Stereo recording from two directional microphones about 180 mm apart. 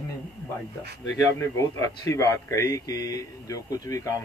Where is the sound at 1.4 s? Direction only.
15° left (ahead or behind).